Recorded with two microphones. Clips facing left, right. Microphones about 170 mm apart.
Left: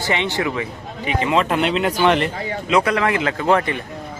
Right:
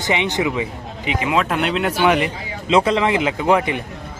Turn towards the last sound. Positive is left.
turn(degrees=-15)  # may be behind; listen again after turning